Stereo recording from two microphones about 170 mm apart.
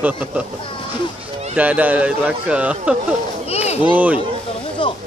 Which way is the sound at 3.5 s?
40° left (ahead or behind).